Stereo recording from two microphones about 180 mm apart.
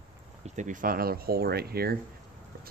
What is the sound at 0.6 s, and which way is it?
Speech, 45° right (ahead or behind).